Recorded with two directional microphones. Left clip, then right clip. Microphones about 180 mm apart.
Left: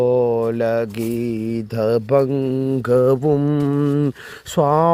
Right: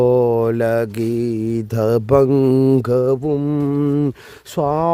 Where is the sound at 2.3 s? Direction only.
50° right (ahead or behind).